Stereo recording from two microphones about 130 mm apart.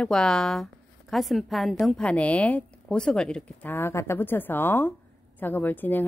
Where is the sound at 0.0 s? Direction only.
5° left (ahead or behind).